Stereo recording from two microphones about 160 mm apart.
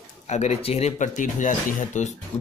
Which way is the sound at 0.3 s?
45° left (ahead or behind).